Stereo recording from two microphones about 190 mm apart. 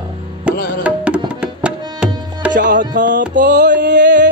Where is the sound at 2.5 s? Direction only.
40° right (ahead or behind).